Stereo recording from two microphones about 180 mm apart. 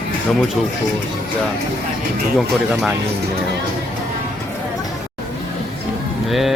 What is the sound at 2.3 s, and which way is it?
Mantra, centre (ahead or behind).